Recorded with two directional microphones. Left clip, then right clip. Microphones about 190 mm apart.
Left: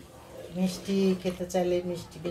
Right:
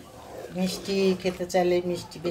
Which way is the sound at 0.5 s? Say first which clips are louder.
Right 3 dB; 30° right (ahead or behind).